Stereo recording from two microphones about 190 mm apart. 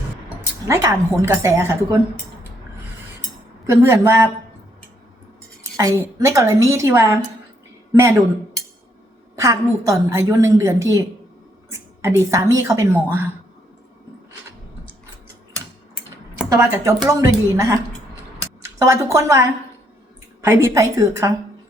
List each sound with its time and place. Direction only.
0.7 s a woman's voice: 15° right (ahead or behind)
3.7 s a woman's voice: 15° right (ahead or behind)
5.7 s a woman's voice: 15° right (ahead or behind)
9.3 s a woman's voice: 15° right (ahead or behind)
16.6 s a woman's voice: 15° right (ahead or behind)
18.8 s a woman's voice: 15° right (ahead or behind)